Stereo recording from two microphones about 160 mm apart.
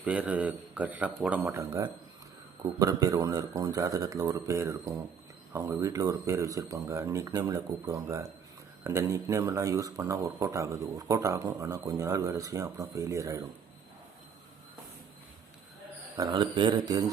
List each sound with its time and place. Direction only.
0.0 s a man's voice: 10° right (ahead or behind)
16.1 s speech: 25° right (ahead or behind)